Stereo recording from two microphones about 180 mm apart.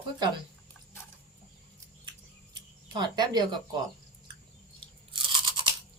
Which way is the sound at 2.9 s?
25° right (ahead or behind).